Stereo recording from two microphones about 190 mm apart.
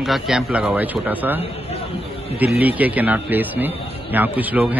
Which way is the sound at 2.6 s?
10° right (ahead or behind).